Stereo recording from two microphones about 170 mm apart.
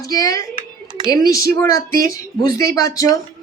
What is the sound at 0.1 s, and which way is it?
Speech, 20° left (ahead or behind).